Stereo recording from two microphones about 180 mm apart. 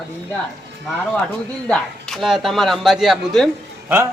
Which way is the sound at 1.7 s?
Centre (ahead or behind).